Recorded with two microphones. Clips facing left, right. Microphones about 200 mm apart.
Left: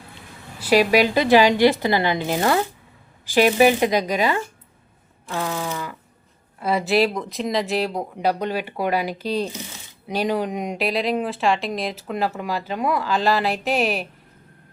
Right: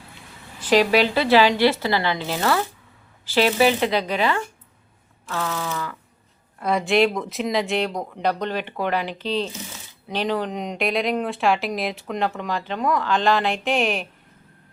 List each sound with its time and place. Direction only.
0.6 s speech: 10° left (ahead or behind)
6.6 s speech: 5° left (ahead or behind)